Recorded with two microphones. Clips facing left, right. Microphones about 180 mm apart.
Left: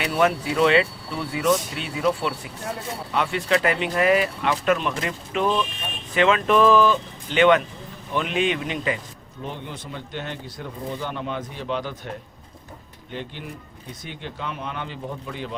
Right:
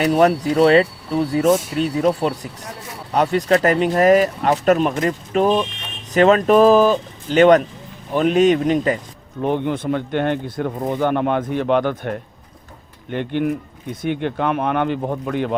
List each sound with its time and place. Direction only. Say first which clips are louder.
0.0 s speech: right 7 dB; 40° right (ahead or behind)
9.4 s speech: right 14 dB; 60° right (ahead or behind)